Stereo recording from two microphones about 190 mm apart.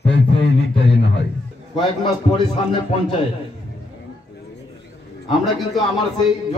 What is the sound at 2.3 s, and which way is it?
Speech, 25° left (ahead or behind).